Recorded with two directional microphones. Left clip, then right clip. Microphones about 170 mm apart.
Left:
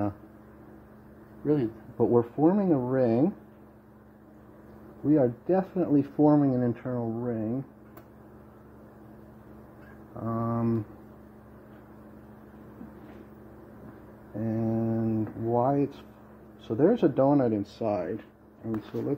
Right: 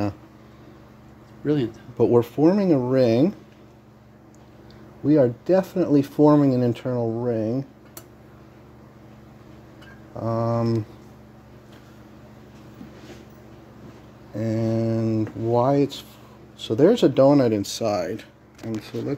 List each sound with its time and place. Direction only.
1.4 s speech: 40° right (ahead or behind)
2.0 s speech: 55° right (ahead or behind)
5.0 s speech: 55° right (ahead or behind)
6.9 s speech: 50° right (ahead or behind)
10.2 s speech: 55° right (ahead or behind)
14.4 s speech: 55° right (ahead or behind)
17.8 s speech: 40° right (ahead or behind)